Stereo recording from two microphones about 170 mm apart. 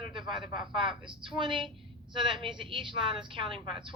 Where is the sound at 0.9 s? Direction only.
30° right (ahead or behind).